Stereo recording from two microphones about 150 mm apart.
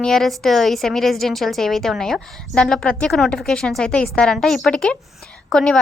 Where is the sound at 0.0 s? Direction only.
Centre (ahead or behind).